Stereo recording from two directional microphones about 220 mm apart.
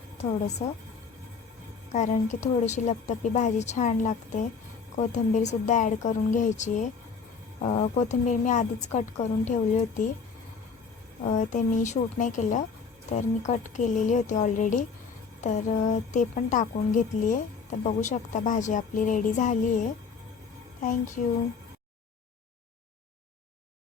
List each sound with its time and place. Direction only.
0.6 s a woman's voice: 30° left (ahead or behind)
1.9 s a woman's voice: 30° left (ahead or behind)
11.3 s a woman's voice: 35° left (ahead or behind)